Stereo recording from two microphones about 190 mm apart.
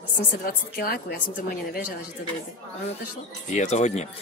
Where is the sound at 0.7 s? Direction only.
50° left (ahead or behind).